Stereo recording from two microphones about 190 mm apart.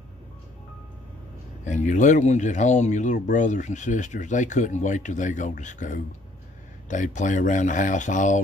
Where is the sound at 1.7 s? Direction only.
40° left (ahead or behind).